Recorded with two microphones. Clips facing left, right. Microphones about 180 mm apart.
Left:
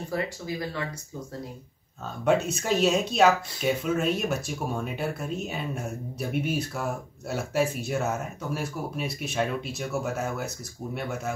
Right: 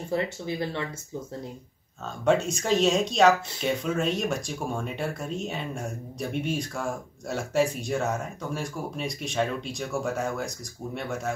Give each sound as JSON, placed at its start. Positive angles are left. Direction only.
{"t": 0.1, "sound": "speech", "side_deg": -25}
{"t": 2.2, "sound": "speech", "side_deg": 5}